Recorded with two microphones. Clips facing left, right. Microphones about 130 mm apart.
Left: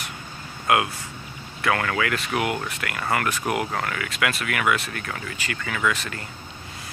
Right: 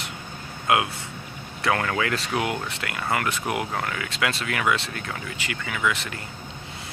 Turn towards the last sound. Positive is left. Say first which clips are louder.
# left 1 dB
turn(degrees=-20)  # may be behind; listen again after turning